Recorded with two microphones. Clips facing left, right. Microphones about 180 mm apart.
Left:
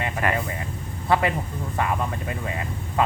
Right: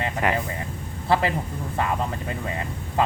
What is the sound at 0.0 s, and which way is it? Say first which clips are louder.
Vehicle: right 1 dB; 20° right (ahead or behind).